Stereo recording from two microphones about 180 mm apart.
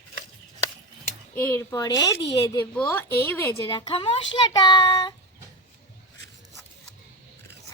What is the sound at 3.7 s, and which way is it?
A woman's voice, 30° left (ahead or behind).